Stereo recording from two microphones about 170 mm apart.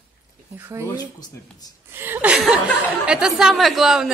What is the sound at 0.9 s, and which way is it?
Speech, 20° left (ahead or behind).